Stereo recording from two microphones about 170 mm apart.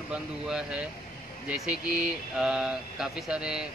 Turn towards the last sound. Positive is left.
turn(degrees=-5)  # may be behind; listen again after turning